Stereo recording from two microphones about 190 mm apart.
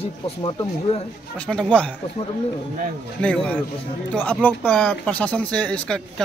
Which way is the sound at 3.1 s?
5° left (ahead or behind).